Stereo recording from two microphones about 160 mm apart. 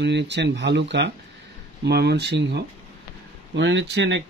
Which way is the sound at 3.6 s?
90° right.